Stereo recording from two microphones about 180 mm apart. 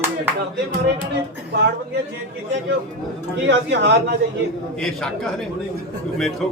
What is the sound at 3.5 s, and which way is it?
Speech, 70° right (ahead or behind).